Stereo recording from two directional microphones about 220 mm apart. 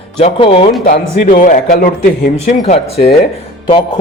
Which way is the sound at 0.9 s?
40° left (ahead or behind).